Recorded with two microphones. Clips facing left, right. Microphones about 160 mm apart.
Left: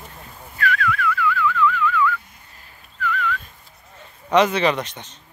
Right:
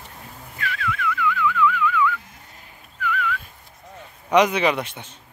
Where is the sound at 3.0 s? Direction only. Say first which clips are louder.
Left 1 dB; 10° right (ahead or behind).